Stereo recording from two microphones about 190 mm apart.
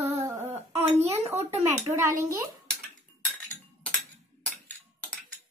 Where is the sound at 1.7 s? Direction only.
15° right (ahead or behind).